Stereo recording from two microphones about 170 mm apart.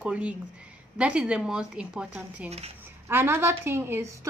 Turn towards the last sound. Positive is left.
turn(degrees=-15)  # may be behind; listen again after turning